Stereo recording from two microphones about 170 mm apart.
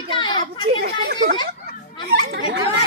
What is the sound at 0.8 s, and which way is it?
Speech, 75° right (ahead or behind).